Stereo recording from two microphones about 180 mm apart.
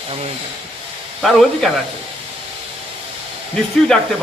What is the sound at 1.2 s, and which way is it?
Speech, centre (ahead or behind).